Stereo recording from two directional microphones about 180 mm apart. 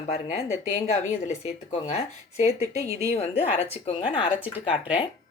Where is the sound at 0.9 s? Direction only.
40° left (ahead or behind).